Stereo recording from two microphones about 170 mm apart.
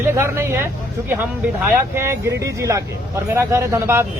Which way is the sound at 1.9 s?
15° right (ahead or behind).